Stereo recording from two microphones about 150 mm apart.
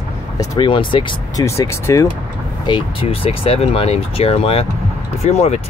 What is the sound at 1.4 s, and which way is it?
Speech, 20° left (ahead or behind).